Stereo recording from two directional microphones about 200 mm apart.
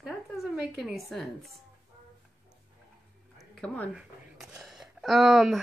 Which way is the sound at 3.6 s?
Centre (ahead or behind).